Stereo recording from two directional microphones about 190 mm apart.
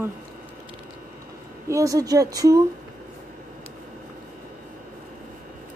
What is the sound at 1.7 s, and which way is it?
Speech, 15° right (ahead or behind).